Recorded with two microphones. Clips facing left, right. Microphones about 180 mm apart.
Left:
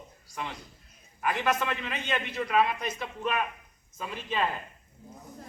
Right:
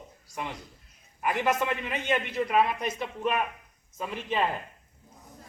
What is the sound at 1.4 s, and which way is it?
A man's voice, 10° right (ahead or behind).